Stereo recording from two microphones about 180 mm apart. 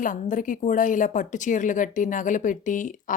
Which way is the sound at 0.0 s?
45° left (ahead or behind).